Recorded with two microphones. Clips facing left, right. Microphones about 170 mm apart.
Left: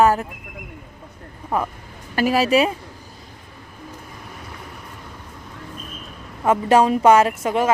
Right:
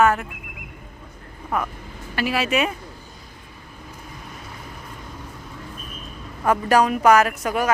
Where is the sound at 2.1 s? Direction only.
40° left (ahead or behind).